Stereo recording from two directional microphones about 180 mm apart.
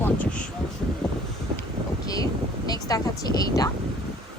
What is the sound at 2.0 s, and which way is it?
Wind noise, 20° left (ahead or behind).